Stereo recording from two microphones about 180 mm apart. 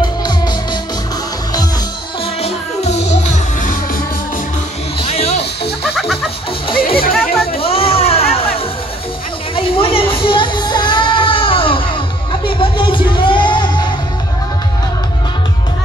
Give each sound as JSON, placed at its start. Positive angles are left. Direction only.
{"t": 0.0, "sound": "music", "side_deg": 25}
{"t": 2.4, "sound": "music", "side_deg": 35}
{"t": 5.1, "sound": "music", "side_deg": 35}
{"t": 6.7, "sound": "music", "side_deg": 30}
{"t": 9.6, "sound": "a sound", "side_deg": 30}
{"t": 12.5, "sound": "music", "side_deg": 25}